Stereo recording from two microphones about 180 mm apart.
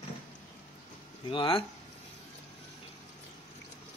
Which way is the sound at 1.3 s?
30° left (ahead or behind).